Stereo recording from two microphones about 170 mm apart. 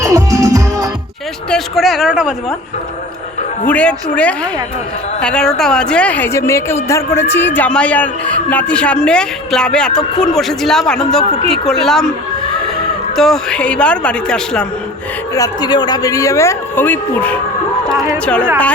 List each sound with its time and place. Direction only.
0.0 s music: 20° right (ahead or behind)
1.5 s speech: centre (ahead or behind)
3.7 s a woman's voice: 5° left (ahead or behind)
13.1 s speech: centre (ahead or behind)
15.4 s a woman's voice: 25° left (ahead or behind)